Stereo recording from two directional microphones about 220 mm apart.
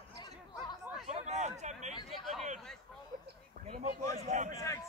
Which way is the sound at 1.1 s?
30° right (ahead or behind).